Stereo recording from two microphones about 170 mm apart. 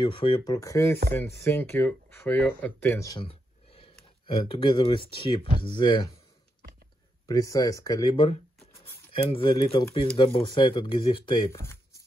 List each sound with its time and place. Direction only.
0.0 s speech: 30° left (ahead or behind)
3.3 s speech: 35° left (ahead or behind)
7.2 s speech: 20° left (ahead or behind)
11.5 s shuffling cards: 15° left (ahead or behind)